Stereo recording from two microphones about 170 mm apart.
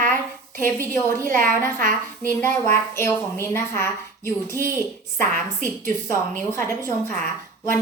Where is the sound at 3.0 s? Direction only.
15° left (ahead or behind).